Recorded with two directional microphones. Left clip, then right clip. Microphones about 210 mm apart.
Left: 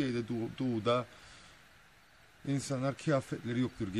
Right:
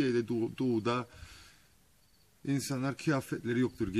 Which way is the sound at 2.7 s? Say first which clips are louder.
Left 1 dB; 5° left (ahead or behind).